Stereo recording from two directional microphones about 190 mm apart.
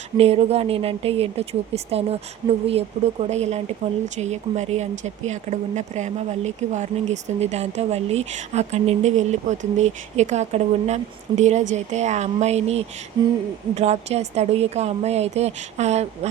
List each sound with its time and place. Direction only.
0.2 s speech: 30° right (ahead or behind)